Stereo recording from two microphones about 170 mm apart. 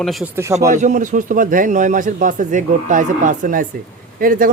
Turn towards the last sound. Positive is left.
turn(degrees=-55)  # may be behind; listen again after turning